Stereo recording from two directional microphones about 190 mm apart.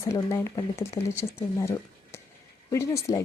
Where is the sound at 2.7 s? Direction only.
15° left (ahead or behind).